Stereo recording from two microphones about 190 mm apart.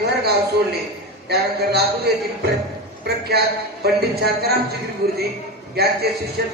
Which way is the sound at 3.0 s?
55° right (ahead or behind).